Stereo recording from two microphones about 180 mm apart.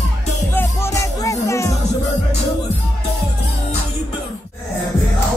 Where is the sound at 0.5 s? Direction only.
15° left (ahead or behind).